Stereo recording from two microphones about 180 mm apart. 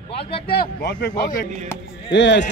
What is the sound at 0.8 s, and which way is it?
Speech, 70° left (ahead or behind).